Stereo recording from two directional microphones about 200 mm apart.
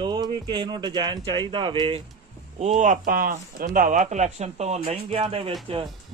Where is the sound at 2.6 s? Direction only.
35° right (ahead or behind).